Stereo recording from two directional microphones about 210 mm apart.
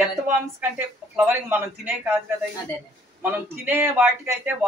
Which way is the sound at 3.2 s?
10° right (ahead or behind).